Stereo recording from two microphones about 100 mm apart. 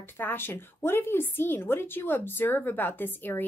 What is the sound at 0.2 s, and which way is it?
A woman's voice, 20° left (ahead or behind).